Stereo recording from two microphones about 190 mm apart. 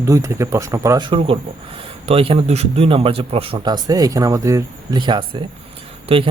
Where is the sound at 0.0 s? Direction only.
15° right (ahead or behind).